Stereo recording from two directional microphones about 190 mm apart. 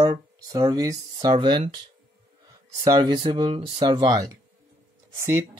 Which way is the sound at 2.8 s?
20° right (ahead or behind).